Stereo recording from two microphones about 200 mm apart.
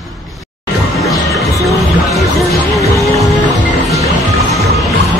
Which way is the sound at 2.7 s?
15° left (ahead or behind).